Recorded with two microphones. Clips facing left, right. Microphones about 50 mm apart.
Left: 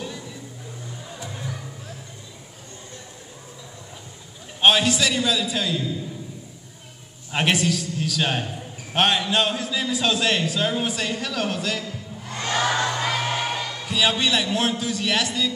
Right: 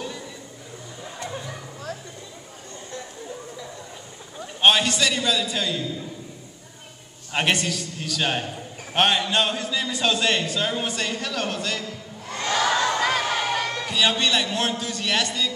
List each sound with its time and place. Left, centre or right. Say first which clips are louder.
4.6 s a man's voice: left 1 dB; centre
7.3 s a man's voice: left 1 dB; centre
12.4 s crowd: right 1 dB; centre
13.3 s music: right 2 dB; right
13.8 s a man's voice: left 2 dB; centre